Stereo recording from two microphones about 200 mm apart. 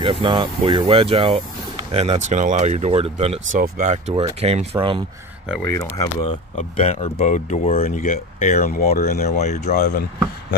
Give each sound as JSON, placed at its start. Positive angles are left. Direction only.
{"t": 0.0, "sound": "speech", "side_deg": -25}
{"t": 5.6, "sound": "speech", "side_deg": 10}
{"t": 6.8, "sound": "speech", "side_deg": 30}